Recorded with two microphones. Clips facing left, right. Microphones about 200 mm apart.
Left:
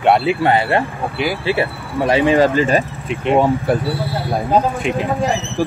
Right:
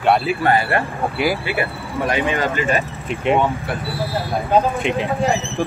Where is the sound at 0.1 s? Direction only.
25° left (ahead or behind).